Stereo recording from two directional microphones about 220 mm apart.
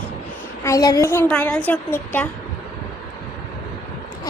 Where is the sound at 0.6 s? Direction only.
15° left (ahead or behind).